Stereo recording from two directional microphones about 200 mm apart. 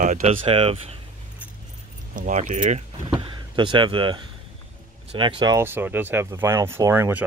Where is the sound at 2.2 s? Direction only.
40° right (ahead or behind).